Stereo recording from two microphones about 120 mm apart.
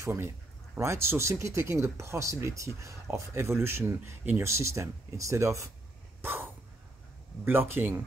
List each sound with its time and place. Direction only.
0.0 s speech: 25° right (ahead or behind)
7.4 s speech: 15° right (ahead or behind)